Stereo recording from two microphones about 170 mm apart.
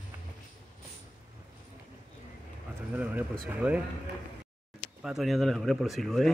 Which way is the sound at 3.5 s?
10° right (ahead or behind).